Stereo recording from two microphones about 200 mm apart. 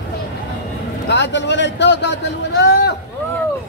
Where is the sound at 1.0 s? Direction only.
60° left (ahead or behind).